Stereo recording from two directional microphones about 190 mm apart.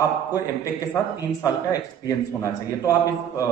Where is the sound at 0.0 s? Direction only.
20° left (ahead or behind).